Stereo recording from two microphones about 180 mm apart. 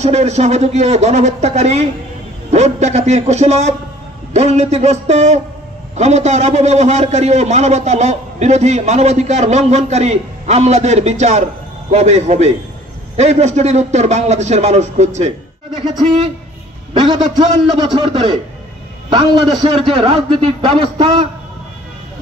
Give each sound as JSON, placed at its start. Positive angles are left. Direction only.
{"t": 0.0, "sound": "a man's voice", "side_deg": -40}
{"t": 15.8, "sound": "a man's voice", "side_deg": -25}